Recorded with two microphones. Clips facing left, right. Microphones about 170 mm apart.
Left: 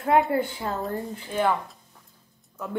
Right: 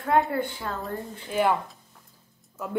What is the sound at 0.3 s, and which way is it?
Speech, 25° left (ahead or behind).